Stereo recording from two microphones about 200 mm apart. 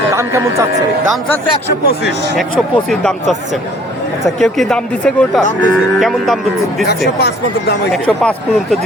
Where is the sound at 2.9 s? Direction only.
Centre (ahead or behind).